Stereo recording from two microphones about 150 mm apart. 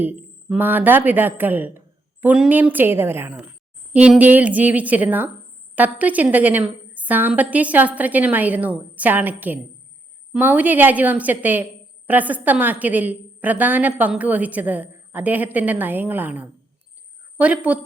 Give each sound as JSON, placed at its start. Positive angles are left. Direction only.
{"t": 0.0, "sound": "a woman's voice", "side_deg": -10}